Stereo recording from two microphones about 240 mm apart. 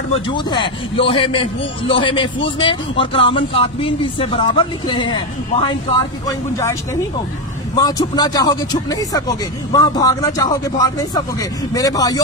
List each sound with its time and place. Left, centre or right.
0.3 s a man's voice: centre